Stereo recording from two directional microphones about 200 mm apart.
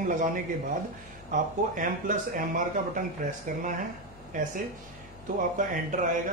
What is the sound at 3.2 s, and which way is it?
Speech, 40° right (ahead or behind).